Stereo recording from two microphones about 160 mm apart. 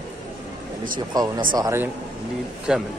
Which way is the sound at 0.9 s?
25° right (ahead or behind).